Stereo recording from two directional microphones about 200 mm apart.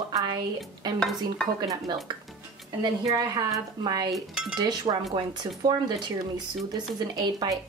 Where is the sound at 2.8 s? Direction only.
20° right (ahead or behind).